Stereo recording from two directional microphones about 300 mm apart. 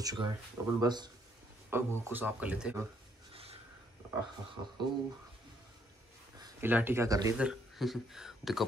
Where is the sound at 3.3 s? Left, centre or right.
Centre.